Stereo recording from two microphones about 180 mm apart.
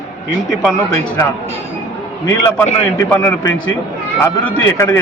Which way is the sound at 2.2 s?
10° left (ahead or behind).